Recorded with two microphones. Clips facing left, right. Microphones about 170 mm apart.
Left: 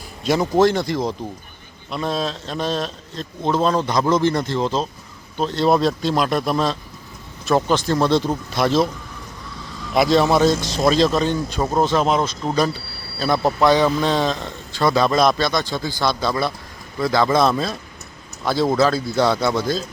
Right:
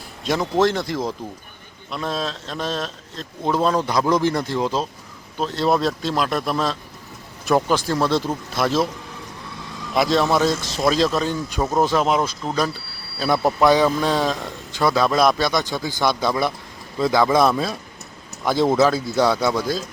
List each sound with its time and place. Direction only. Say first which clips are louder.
0.3 s a man's voice: left 3 dB; centre (ahead or behind)
9.9 s a man's voice: left 3 dB; centre (ahead or behind)